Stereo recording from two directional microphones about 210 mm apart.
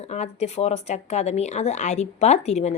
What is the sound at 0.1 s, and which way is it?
A woman's voice, 30° left (ahead or behind).